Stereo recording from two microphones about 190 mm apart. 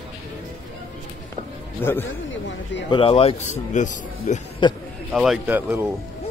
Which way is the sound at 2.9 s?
30° left (ahead or behind).